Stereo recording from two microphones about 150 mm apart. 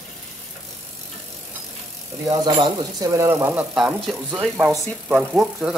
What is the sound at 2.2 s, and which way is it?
Speech, 30° right (ahead or behind).